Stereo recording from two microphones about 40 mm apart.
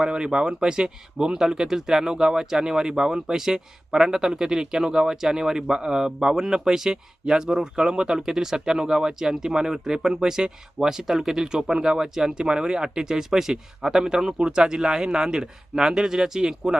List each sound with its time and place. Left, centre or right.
0.0 s speech: right